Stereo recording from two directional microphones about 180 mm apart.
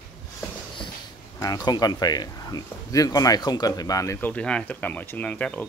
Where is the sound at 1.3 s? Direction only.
20° left (ahead or behind).